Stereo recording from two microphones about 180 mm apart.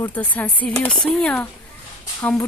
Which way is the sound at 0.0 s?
10° left (ahead or behind).